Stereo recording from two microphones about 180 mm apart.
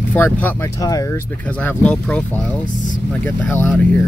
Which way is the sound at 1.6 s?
5° left (ahead or behind).